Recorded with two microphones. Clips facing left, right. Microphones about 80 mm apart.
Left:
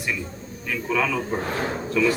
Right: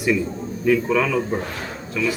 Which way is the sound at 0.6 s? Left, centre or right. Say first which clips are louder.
Right 6 dB; centre.